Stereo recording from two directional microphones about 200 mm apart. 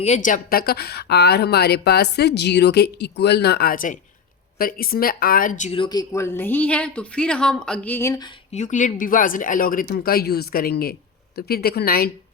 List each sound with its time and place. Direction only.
0.0 s a woman's voice: 35° left (ahead or behind); by 8.3 s 15° left (ahead or behind)
8.5 s speech: 40° left (ahead or behind)